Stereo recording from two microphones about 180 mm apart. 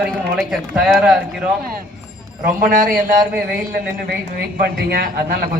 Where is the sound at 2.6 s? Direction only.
45° right (ahead or behind).